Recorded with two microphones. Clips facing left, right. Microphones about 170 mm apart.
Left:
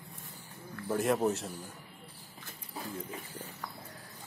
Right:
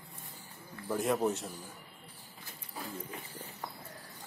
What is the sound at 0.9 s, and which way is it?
Speech, centre (ahead or behind).